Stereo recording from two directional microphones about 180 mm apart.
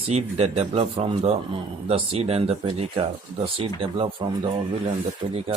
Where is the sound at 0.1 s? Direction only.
35° right (ahead or behind).